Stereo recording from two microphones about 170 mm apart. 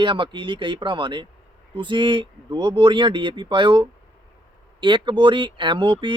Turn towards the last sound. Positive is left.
turn(degrees=-30)  # may be behind; listen again after turning